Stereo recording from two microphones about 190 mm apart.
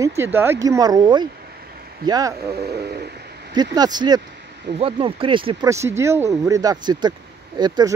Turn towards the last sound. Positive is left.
turn(degrees=-20)  # may be behind; listen again after turning